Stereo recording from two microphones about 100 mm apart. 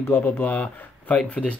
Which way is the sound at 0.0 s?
20° left (ahead or behind).